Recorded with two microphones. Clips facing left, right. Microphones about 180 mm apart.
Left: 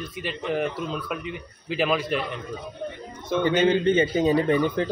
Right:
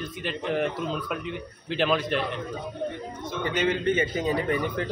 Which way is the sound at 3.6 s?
30° left (ahead or behind).